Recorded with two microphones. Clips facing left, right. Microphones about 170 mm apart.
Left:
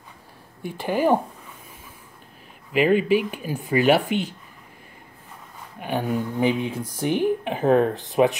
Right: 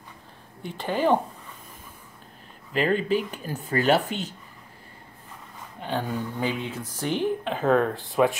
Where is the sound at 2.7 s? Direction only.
10° left (ahead or behind).